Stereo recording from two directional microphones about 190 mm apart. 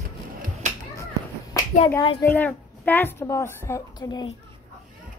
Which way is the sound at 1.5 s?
20° left (ahead or behind).